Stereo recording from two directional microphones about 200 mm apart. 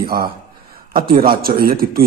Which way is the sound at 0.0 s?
50° right (ahead or behind).